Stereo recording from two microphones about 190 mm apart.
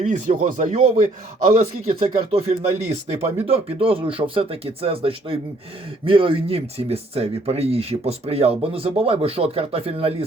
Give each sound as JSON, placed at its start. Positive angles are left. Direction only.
{"t": 0.0, "sound": "a man's voice", "side_deg": -40}